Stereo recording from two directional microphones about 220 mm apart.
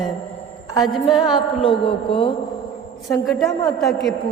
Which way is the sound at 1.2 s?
20° left (ahead or behind).